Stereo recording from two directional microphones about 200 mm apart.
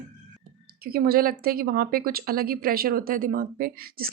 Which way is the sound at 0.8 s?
50° right (ahead or behind).